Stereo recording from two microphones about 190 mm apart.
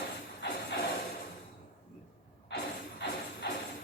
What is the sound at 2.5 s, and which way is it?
Music, 65° left (ahead or behind).